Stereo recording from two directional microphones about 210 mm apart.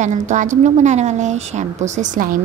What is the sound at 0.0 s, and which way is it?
A woman's voice, 35° right (ahead or behind).